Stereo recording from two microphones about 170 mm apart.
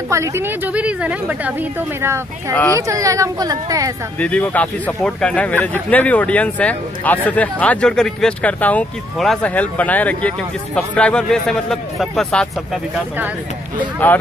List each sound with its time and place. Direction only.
0.1 s a woman's voice: 15° right (ahead or behind)
4.2 s speech: 10° left (ahead or behind)
14.0 s speech: 10° left (ahead or behind)